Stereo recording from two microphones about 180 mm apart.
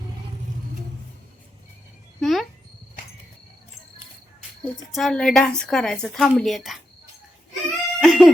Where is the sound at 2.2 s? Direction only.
Centre (ahead or behind).